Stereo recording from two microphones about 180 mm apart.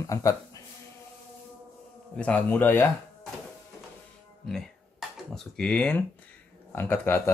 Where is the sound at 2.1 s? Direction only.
5° left (ahead or behind).